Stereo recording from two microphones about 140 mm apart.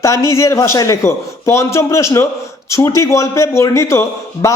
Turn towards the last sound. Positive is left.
turn(degrees=20)  # may be behind; listen again after turning